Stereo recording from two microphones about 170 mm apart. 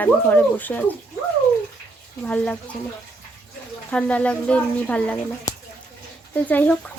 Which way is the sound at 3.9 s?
5° left (ahead or behind).